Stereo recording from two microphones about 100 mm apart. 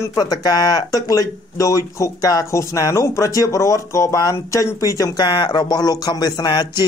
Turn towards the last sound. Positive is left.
turn(degrees=45)  # may be behind; listen again after turning